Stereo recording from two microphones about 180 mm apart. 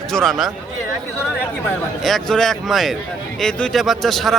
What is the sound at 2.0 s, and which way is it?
A man's voice, centre (ahead or behind).